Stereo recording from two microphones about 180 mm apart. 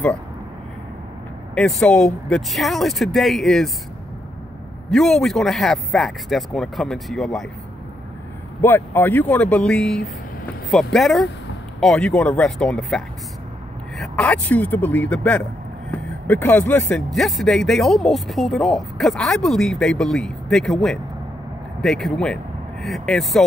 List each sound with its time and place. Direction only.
1.5 s speech: 5° left (ahead or behind)
4.9 s speech: centre (ahead or behind)
8.5 s a man's voice: 10° left (ahead or behind)